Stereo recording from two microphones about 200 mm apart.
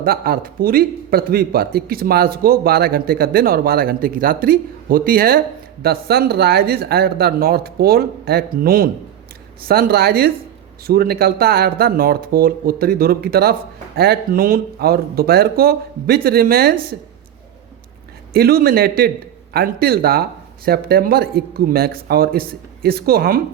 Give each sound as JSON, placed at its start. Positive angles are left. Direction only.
{"t": 0.0, "sound": "speech", "side_deg": -50}
{"t": 18.3, "sound": "speech", "side_deg": -50}